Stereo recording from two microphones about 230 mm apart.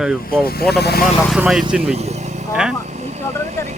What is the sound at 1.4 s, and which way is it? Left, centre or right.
Speech, centre.